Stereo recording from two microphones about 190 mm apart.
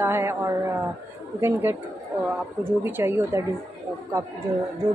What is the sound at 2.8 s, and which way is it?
Speech, 10° right (ahead or behind).